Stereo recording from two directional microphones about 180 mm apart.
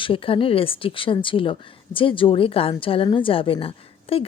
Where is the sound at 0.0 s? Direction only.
30° left (ahead or behind).